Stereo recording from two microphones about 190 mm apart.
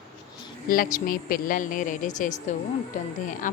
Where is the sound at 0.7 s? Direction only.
45° left (ahead or behind).